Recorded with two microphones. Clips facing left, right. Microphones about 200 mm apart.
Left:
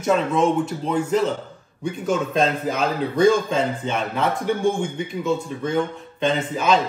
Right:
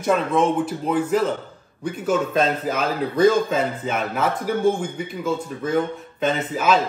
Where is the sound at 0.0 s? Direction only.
Centre (ahead or behind).